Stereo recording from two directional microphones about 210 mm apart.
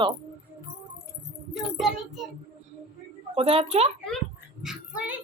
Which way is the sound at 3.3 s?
25° right (ahead or behind).